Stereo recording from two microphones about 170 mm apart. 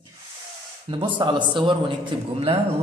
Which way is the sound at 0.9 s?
30° right (ahead or behind).